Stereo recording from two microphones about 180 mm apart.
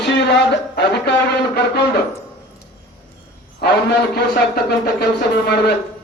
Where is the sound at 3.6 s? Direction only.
65° left (ahead or behind).